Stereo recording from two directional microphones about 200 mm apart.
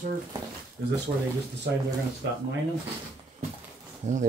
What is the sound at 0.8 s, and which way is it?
Speech, 60° right (ahead or behind).